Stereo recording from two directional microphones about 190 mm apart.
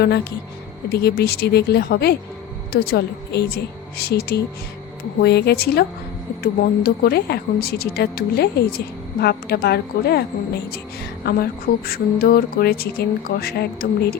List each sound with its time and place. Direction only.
0.0 s a woman's voice: 60° left (ahead or behind)